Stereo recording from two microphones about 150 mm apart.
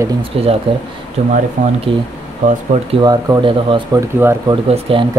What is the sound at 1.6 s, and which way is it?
Speech, 60° right (ahead or behind).